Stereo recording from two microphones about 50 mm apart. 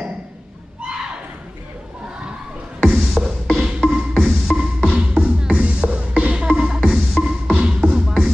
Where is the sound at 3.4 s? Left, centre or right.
Centre.